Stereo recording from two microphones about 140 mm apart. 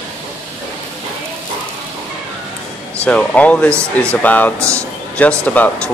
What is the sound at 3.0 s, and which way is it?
Speech, 10° left (ahead or behind).